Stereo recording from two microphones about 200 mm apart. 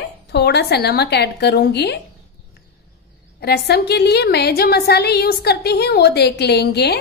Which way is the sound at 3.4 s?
55° left (ahead or behind).